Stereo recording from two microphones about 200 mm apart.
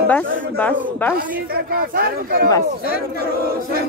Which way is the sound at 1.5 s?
45° right (ahead or behind).